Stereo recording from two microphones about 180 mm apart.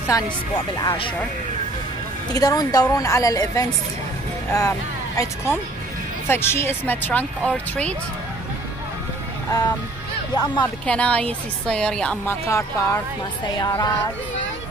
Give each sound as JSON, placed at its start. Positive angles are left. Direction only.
{"t": 0.1, "sound": "a woman's voice", "side_deg": 20}
{"t": 2.3, "sound": "a woman's voice", "side_deg": 20}
{"t": 6.2, "sound": "speech", "side_deg": 15}
{"t": 9.5, "sound": "a woman's voice", "side_deg": 20}
{"t": 10.9, "sound": "speech", "side_deg": 5}
{"t": 12.4, "sound": "a woman's voice", "side_deg": 15}